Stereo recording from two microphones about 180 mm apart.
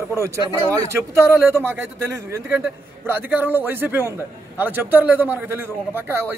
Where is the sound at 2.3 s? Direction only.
10° right (ahead or behind).